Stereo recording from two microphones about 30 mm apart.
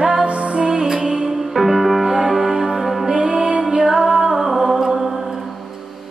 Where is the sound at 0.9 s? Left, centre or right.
Right.